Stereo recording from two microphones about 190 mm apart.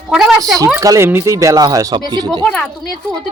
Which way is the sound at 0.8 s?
15° right (ahead or behind).